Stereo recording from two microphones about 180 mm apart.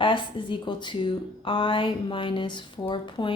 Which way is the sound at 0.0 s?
25° left (ahead or behind).